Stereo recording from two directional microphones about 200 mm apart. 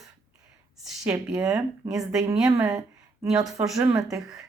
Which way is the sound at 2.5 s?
15° right (ahead or behind).